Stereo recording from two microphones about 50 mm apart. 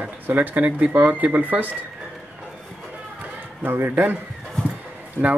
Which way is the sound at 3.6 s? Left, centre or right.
Right.